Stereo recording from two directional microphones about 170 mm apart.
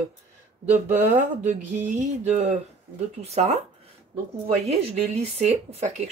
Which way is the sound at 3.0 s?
40° right (ahead or behind).